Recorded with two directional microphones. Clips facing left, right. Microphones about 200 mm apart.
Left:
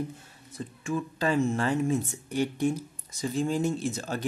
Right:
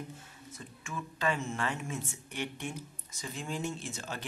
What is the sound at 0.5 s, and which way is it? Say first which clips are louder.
Speech: left 13 dB; 35° left (ahead or behind).